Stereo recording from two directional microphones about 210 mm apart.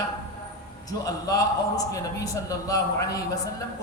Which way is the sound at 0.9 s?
15° left (ahead or behind).